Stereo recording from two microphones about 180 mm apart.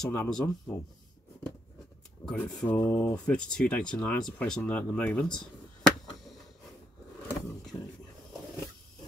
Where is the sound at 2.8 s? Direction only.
20° left (ahead or behind).